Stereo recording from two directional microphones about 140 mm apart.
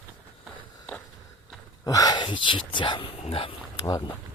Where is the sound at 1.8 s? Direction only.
25° left (ahead or behind).